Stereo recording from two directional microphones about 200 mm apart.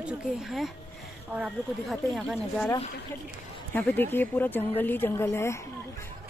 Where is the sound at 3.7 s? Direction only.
10° left (ahead or behind).